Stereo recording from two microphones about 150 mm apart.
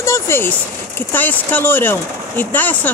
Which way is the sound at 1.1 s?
10° left (ahead or behind).